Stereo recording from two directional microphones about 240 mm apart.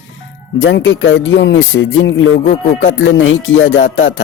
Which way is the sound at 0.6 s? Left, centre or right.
Left.